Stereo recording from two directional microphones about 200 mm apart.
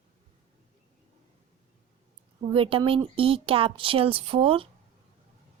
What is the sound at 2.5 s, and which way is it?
Speech, 25° right (ahead or behind).